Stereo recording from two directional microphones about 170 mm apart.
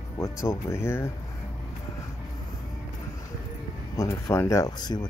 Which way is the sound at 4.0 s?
15° left (ahead or behind).